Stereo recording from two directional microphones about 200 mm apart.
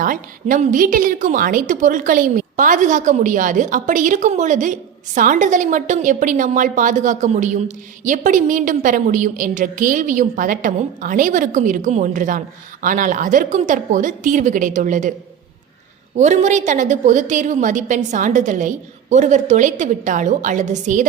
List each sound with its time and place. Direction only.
0.0 s a woman's voice: 40° right (ahead or behind)
16.1 s a woman's voice: 35° right (ahead or behind)